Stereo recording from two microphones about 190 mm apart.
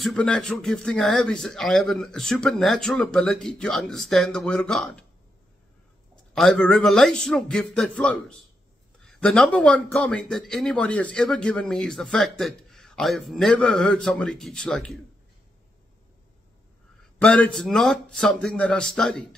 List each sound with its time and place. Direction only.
0.0 s speech: 5° left (ahead or behind)
6.3 s speech: 5° left (ahead or behind)
17.2 s speech: 5° left (ahead or behind)